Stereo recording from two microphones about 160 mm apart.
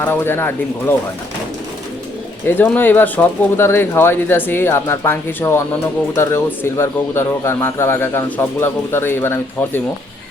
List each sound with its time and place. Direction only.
0.0 s speech: 15° left (ahead or behind)
2.5 s speech: 15° left (ahead or behind)